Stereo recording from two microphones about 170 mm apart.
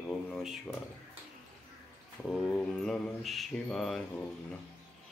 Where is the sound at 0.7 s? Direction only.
15° left (ahead or behind).